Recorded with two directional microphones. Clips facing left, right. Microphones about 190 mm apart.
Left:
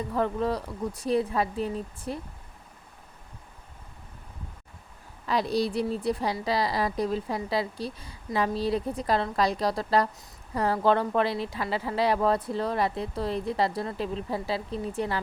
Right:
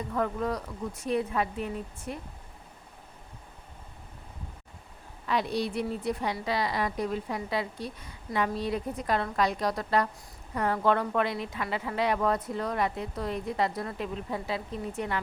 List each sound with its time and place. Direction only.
0.1 s a woman's voice: 30° left (ahead or behind)
5.2 s a woman's voice: 35° left (ahead or behind)